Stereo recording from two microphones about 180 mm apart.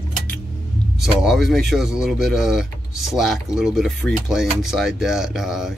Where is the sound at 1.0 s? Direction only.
Centre (ahead or behind).